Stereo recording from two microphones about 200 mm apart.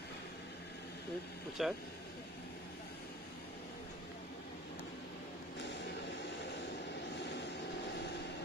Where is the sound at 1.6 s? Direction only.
Centre (ahead or behind).